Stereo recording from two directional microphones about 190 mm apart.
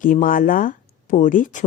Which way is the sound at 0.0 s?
45° left (ahead or behind).